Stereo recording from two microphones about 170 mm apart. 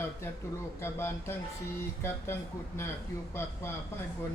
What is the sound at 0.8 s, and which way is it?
Speech, 15° left (ahead or behind).